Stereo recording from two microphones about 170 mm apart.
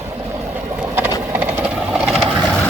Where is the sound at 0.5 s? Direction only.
10° right (ahead or behind).